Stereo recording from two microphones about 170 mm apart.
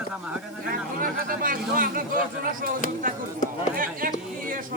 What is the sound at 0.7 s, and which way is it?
Speech, 55° right (ahead or behind).